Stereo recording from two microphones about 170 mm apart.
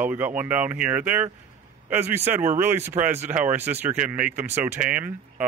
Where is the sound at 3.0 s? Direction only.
40° right (ahead or behind).